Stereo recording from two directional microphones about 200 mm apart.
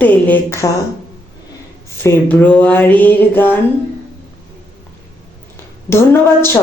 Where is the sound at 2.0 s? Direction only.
10° left (ahead or behind).